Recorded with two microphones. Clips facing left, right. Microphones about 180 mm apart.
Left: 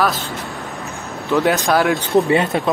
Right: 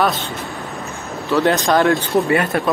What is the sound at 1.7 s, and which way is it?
Speech, centre (ahead or behind).